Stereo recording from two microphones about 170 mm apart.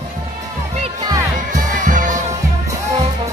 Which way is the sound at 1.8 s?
50° right (ahead or behind).